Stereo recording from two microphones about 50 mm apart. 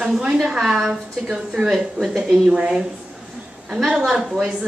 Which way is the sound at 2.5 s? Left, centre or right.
Centre.